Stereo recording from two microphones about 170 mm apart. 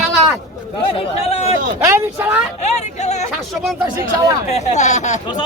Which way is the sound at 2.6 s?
40° left (ahead or behind).